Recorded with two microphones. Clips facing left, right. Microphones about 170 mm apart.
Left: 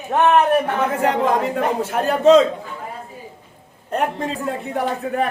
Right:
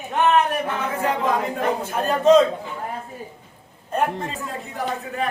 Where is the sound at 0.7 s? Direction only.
70° left (ahead or behind).